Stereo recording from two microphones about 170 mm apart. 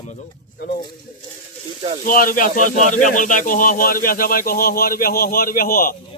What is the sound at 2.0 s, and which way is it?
Speech, 55° left (ahead or behind).